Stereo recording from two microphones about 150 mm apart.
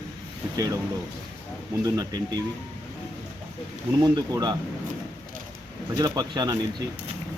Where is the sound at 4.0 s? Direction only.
25° right (ahead or behind).